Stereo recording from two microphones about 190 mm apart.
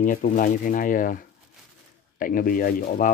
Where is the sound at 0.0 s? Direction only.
45° left (ahead or behind).